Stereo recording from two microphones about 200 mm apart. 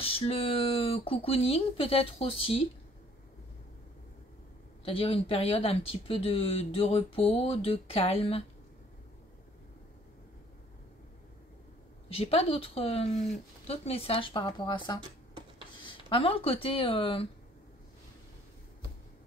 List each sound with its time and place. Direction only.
0.0 s speech: 30° left (ahead or behind)
4.8 s speech: 25° left (ahead or behind)
12.1 s speech: 30° left (ahead or behind)